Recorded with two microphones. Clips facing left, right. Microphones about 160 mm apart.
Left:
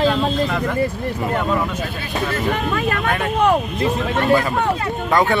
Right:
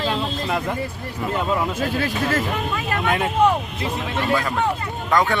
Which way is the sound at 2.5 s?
65° left (ahead or behind).